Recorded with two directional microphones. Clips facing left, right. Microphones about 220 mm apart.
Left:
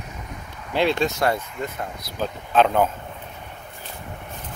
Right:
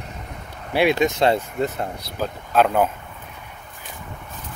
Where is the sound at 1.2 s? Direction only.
25° right (ahead or behind).